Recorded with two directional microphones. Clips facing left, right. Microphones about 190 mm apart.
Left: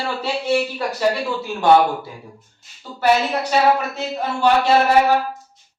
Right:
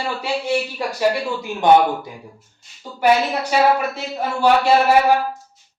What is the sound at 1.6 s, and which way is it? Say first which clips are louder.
Speech: right 1 dB; 20° right (ahead or behind).